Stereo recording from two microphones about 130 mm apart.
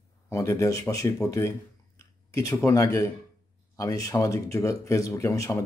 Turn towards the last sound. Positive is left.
turn(degrees=25)  # may be behind; listen again after turning